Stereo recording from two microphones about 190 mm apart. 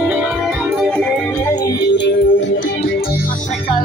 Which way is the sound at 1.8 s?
65° left (ahead or behind).